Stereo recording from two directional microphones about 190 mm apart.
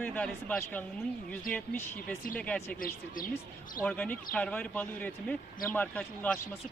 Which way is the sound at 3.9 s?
5° left (ahead or behind).